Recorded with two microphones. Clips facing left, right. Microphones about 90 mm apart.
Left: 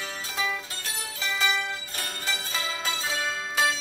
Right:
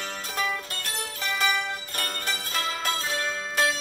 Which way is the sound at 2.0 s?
55° right (ahead or behind).